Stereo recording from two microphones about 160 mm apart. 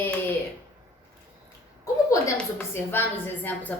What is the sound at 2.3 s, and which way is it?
A woman's voice, 15° left (ahead or behind).